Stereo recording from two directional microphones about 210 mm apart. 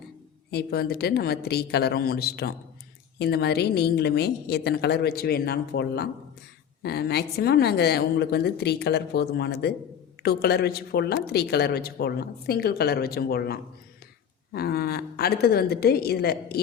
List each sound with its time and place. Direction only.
0.5 s speech: 50° left (ahead or behind)